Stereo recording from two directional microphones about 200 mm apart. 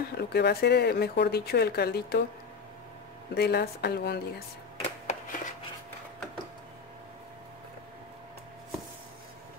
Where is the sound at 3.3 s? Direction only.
55° left (ahead or behind).